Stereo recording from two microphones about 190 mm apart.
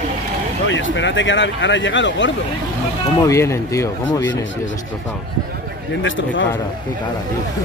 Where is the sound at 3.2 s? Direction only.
15° left (ahead or behind).